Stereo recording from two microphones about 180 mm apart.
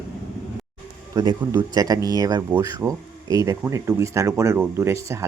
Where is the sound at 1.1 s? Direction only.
20° right (ahead or behind).